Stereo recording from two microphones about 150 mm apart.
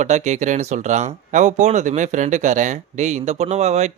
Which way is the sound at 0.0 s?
50° right (ahead or behind).